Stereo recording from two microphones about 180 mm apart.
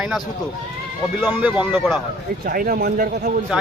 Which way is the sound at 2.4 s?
55° right (ahead or behind).